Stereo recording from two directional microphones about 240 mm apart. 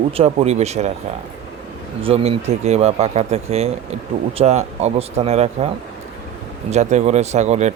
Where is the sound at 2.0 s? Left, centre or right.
Right.